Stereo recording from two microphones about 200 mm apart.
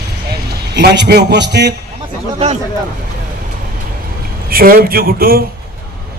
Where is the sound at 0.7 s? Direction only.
55° right (ahead or behind).